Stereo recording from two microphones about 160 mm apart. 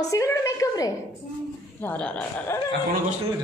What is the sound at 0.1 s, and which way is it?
Speech, 20° left (ahead or behind).